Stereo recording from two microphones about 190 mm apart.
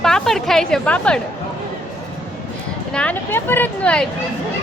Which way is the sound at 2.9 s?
5° left (ahead or behind).